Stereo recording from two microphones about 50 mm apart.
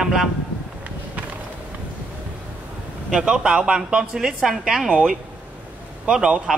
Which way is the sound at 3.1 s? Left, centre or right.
Centre.